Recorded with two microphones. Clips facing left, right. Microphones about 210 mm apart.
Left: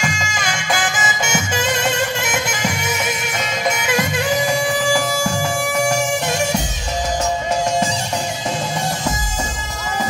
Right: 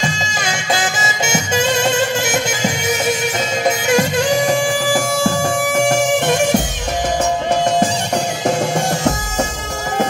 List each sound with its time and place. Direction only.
0.0 s music: 25° right (ahead or behind)
5.4 s music: 50° right (ahead or behind)